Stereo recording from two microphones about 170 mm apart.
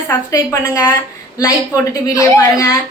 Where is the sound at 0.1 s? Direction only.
20° left (ahead or behind).